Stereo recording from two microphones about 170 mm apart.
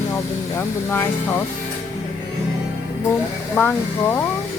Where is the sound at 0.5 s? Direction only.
15° left (ahead or behind).